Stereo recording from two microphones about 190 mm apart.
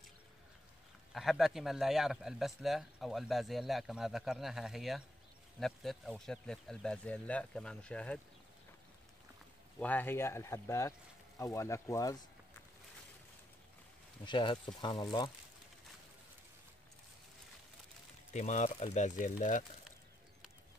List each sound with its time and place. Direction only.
1.1 s a man's voice: centre (ahead or behind)
9.8 s speech: 10° left (ahead or behind)
14.2 s speech: 25° left (ahead or behind)
18.3 s speech: 40° left (ahead or behind)